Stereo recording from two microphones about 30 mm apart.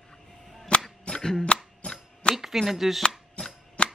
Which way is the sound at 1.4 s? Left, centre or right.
Left.